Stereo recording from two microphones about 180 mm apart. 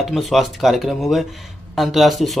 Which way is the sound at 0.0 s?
Centre (ahead or behind).